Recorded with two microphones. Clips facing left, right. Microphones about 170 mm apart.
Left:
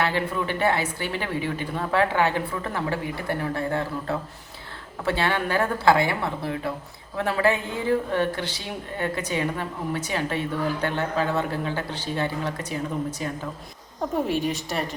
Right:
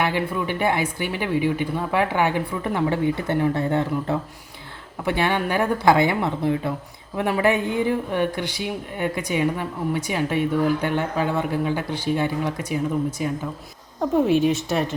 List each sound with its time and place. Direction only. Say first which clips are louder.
0.0 s speech: right 2 dB; 15° right (ahead or behind)
14.3 s a woman's voice: right 8 dB; centre (ahead or behind)